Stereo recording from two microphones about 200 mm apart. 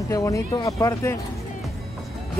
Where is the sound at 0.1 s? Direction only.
15° left (ahead or behind).